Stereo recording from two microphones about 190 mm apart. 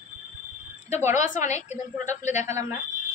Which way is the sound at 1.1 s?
40° left (ahead or behind).